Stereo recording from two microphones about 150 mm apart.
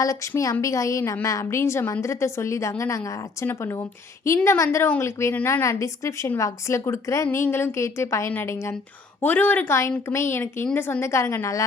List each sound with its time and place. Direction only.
0.0 s a woman's voice: 20° left (ahead or behind)